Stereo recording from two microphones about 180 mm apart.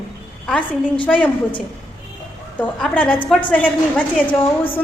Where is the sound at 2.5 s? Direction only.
10° left (ahead or behind).